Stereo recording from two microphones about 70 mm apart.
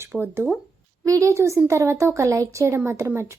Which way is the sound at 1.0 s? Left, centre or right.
Right.